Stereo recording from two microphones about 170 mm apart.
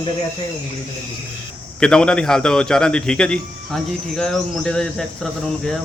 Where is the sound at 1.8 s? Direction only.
5° left (ahead or behind).